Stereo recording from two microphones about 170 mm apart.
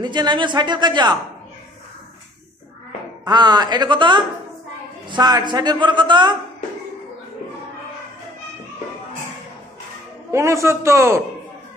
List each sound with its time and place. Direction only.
0.0 s a man's voice: 25° right (ahead or behind)
3.3 s a man's voice: 25° right (ahead or behind)
10.3 s a man's voice: 15° right (ahead or behind)